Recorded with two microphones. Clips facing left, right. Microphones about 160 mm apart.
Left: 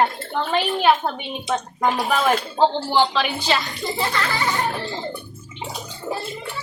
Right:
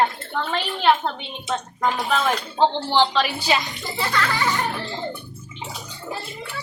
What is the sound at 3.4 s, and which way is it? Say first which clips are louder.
Speech: even; 15° right (ahead or behind).